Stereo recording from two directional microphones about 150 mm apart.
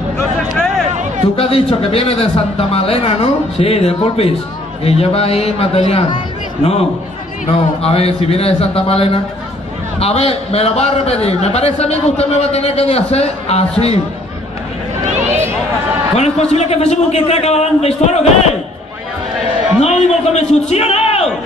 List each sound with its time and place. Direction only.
1.3 s a man's voice: 40° left (ahead or behind)
7.8 s a man's voice: 40° left (ahead or behind)
16.2 s a man's voice: 45° left (ahead or behind)
19.8 s a sound: 45° left (ahead or behind)